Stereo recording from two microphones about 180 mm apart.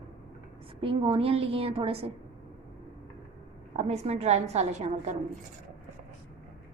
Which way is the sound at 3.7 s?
35° right (ahead or behind).